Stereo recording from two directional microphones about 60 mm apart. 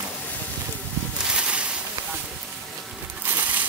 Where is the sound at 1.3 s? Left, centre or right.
Centre.